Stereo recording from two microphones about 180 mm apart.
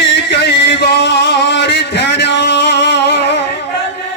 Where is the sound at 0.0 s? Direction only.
75° left (ahead or behind).